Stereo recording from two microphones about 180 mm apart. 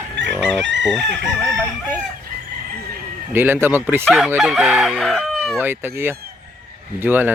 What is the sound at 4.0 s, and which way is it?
Speech, centre (ahead or behind).